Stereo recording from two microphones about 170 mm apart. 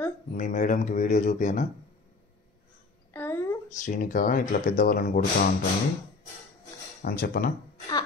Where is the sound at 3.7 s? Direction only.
50° left (ahead or behind).